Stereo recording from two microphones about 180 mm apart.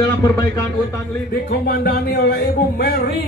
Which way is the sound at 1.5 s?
60° left (ahead or behind).